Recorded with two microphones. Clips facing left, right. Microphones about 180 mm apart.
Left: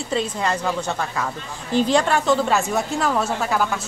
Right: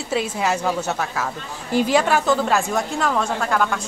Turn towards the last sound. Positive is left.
turn(degrees=5)  # may be behind; listen again after turning